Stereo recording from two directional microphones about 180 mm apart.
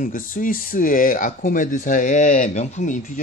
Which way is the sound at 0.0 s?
50° left (ahead or behind).